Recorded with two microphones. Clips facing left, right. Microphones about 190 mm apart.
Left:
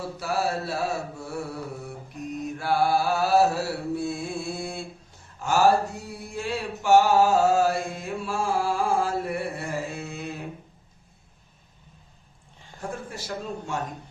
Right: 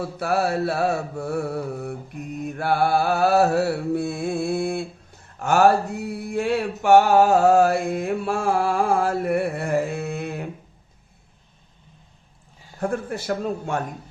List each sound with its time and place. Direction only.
0.2 s mantra: 60° right (ahead or behind)
12.8 s mantra: 60° right (ahead or behind)